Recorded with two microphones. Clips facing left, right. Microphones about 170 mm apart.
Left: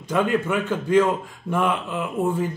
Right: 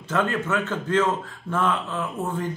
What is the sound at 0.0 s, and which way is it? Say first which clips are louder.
A man's voice: left 3 dB; 15° left (ahead or behind).